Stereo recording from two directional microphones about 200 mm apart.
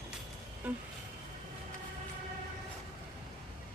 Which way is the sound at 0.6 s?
10° right (ahead or behind).